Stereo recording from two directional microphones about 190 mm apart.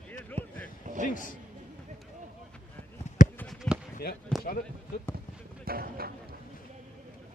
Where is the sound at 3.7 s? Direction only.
5° left (ahead or behind).